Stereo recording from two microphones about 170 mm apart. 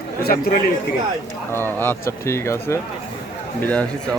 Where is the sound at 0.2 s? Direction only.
65° left (ahead or behind).